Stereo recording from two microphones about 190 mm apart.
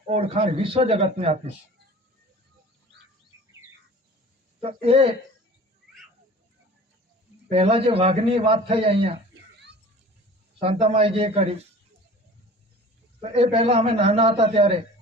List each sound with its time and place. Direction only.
0.1 s a man's voice: 35° right (ahead or behind)
4.6 s a man's voice: 30° right (ahead or behind)
7.5 s a man's voice: 30° right (ahead or behind)
9.3 s a sound: 60° right (ahead or behind)
10.6 s a man's voice: 30° right (ahead or behind)
13.3 s a man's voice: 30° right (ahead or behind)